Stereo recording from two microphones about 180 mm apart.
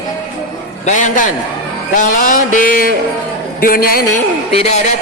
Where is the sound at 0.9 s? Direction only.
45° left (ahead or behind).